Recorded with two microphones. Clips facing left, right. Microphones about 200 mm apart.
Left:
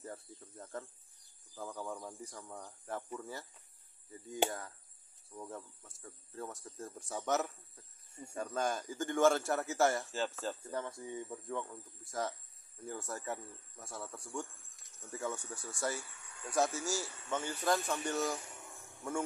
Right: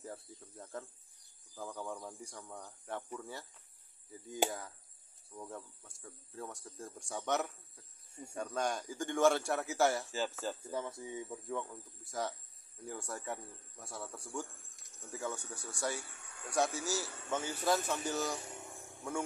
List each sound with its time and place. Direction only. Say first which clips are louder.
0.0 s cricket: even; centre (ahead or behind)
1.5 s speech: even; centre (ahead or behind)